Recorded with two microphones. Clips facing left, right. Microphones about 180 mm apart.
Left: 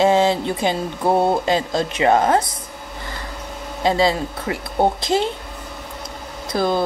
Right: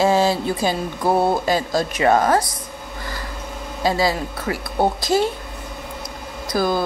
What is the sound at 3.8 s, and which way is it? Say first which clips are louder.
Speech: left 2 dB; 25° left (ahead or behind).